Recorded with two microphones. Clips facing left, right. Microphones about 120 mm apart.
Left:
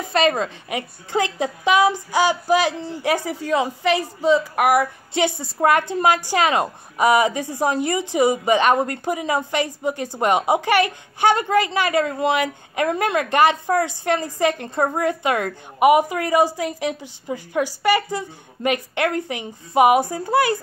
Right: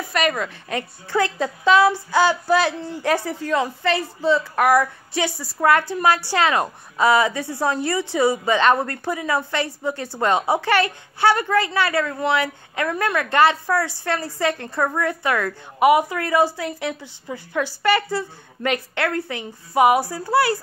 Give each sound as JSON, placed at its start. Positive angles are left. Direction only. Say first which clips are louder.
{"t": 0.1, "sound": "a woman's voice", "louder": "left 4 dB", "side_deg": 25}
{"t": 0.7, "sound": "a woman's voice", "louder": "even", "side_deg": 15}